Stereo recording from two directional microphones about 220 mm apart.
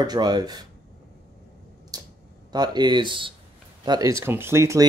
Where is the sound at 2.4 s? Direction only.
20° right (ahead or behind).